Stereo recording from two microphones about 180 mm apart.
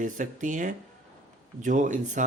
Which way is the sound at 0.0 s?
45° right (ahead or behind).